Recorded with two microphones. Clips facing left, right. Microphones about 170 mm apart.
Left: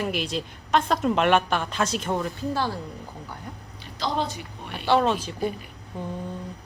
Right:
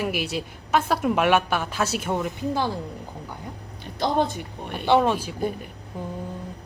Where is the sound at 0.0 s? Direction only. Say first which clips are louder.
Right 1 dB; 10° right (ahead or behind).